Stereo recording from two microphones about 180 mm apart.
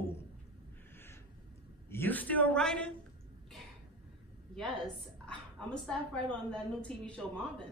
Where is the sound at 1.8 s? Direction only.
10° left (ahead or behind).